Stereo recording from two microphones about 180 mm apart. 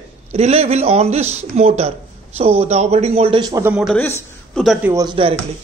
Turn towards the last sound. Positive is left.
turn(degrees=-20)  # may be behind; listen again after turning